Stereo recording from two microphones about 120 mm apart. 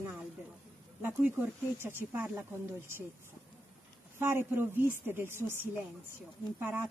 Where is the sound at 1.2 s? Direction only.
15° right (ahead or behind).